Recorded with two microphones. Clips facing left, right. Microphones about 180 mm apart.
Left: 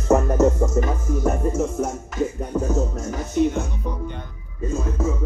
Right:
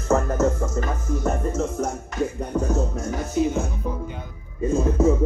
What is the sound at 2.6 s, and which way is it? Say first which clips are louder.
Music: left 1 dB; centre (ahead or behind).